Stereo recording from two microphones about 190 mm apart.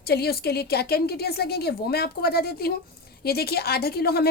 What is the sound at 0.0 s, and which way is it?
A woman's voice, 55° left (ahead or behind).